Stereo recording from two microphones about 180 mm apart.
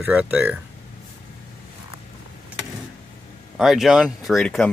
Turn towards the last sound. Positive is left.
turn(degrees=5)  # may be behind; listen again after turning